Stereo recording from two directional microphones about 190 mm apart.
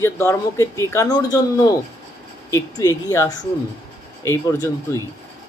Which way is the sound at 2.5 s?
15° left (ahead or behind).